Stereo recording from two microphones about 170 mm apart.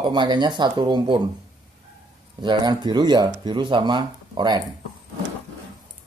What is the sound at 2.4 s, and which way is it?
Speech, 25° right (ahead or behind).